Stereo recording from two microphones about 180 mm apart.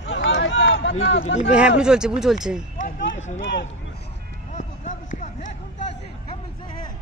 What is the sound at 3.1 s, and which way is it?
Speech, 40° left (ahead or behind).